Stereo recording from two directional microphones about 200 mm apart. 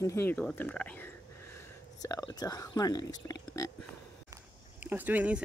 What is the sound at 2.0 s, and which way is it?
Speech, 20° left (ahead or behind).